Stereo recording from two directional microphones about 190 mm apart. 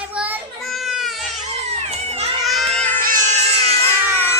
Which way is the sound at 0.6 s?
Centre (ahead or behind).